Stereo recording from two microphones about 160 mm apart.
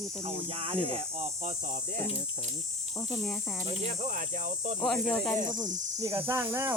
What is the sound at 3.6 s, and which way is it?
Speech, 45° right (ahead or behind).